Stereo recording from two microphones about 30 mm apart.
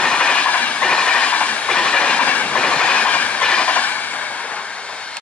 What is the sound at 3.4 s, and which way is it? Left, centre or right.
Train, left.